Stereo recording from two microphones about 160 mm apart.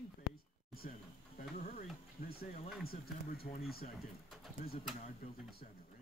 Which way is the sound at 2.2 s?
65° left (ahead or behind).